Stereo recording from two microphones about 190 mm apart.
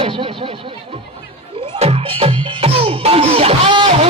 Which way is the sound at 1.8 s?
30° right (ahead or behind).